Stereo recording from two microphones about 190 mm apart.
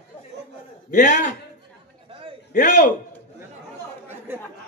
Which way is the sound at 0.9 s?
45° left (ahead or behind).